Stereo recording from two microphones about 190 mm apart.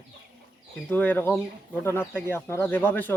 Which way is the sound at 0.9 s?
10° left (ahead or behind).